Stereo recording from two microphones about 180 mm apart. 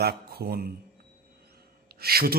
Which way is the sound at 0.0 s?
60° right (ahead or behind).